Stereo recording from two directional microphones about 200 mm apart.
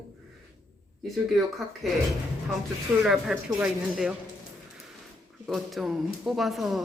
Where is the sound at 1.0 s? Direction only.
Centre (ahead or behind).